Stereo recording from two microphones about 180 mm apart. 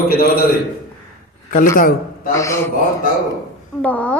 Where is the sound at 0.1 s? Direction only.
60° left (ahead or behind).